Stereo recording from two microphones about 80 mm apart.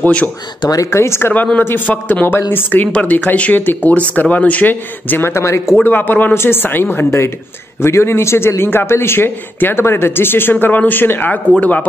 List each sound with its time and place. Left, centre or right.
0.0 s a man's voice: centre
0.7 s speech: left
1.3 s a man's voice: centre
5.9 s a man's voice: left